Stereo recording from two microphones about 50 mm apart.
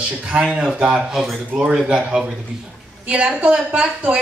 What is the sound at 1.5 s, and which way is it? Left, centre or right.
Speech, right.